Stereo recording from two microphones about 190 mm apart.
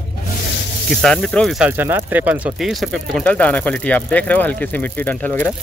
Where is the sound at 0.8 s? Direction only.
Centre (ahead or behind).